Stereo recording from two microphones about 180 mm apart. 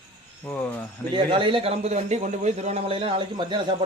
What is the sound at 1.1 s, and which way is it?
A man's voice, 25° right (ahead or behind).